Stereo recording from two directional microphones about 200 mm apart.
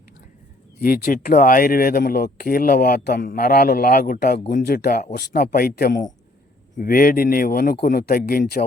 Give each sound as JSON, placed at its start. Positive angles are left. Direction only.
{"t": 0.8, "sound": "speech", "side_deg": 45}